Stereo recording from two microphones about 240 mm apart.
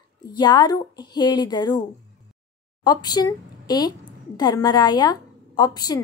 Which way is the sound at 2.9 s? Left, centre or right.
Centre.